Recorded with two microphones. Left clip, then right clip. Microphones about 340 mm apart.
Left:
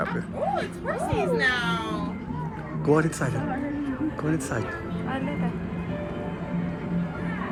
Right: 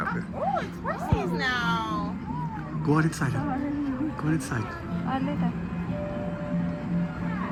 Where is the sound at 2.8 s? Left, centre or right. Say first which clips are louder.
Left 4 dB; centre.